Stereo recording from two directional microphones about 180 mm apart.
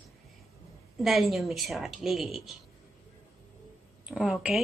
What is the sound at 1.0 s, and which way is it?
Speech, centre (ahead or behind).